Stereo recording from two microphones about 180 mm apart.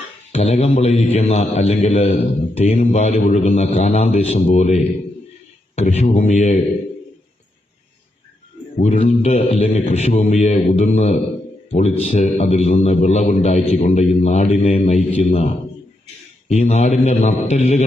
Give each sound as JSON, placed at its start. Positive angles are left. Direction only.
{"t": 0.3, "sound": "a man's voice", "side_deg": 35}
{"t": 8.8, "sound": "a man's voice", "side_deg": 35}
{"t": 16.6, "sound": "a man's voice", "side_deg": 35}